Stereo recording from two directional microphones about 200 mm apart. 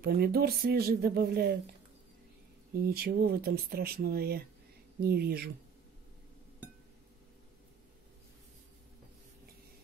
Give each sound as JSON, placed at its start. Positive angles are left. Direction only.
{"t": 0.0, "sound": "speech", "side_deg": -50}
{"t": 2.7, "sound": "speech", "side_deg": -50}